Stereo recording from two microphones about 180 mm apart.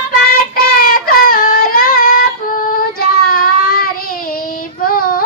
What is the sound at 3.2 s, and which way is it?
Child singing, 55° left (ahead or behind).